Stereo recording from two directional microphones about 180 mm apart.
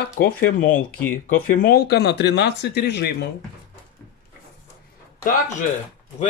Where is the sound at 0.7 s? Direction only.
10° left (ahead or behind).